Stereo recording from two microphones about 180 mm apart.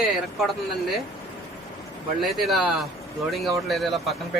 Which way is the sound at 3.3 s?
Centre (ahead or behind).